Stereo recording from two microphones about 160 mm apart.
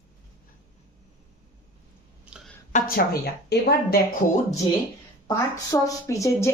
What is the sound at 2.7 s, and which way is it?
A woman's voice, 60° left (ahead or behind).